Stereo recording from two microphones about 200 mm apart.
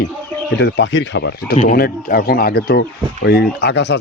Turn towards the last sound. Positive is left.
turn(degrees=60)  # may be behind; listen again after turning